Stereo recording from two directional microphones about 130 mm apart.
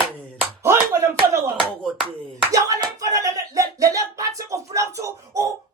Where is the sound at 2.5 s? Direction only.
25° right (ahead or behind).